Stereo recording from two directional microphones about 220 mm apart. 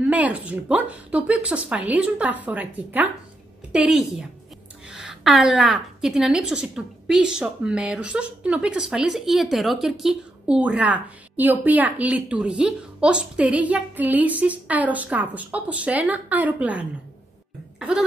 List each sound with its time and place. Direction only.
0.0 s a woman's voice: 5° right (ahead or behind)